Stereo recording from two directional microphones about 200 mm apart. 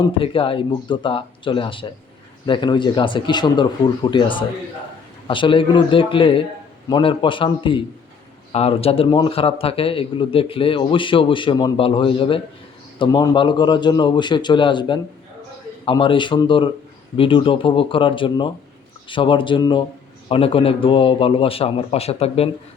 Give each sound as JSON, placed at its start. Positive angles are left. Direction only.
{"t": 0.0, "sound": "a man's voice", "side_deg": 25}